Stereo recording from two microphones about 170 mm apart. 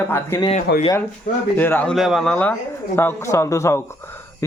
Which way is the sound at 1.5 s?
10° left (ahead or behind).